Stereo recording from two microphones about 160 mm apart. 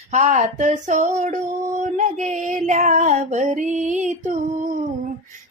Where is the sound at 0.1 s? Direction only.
50° right (ahead or behind).